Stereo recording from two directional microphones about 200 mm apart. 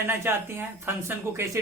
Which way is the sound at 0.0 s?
10° right (ahead or behind).